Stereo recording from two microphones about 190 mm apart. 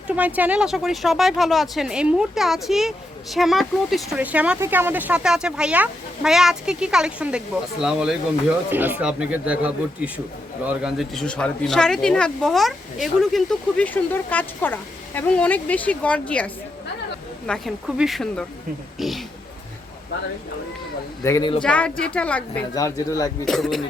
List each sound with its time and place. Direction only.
0.2 s speech: 10° right (ahead or behind)
21.2 s speech: 15° left (ahead or behind)
21.6 s speech: 5° left (ahead or behind)
22.7 s speech: 20° left (ahead or behind)
23.5 s speech: centre (ahead or behind)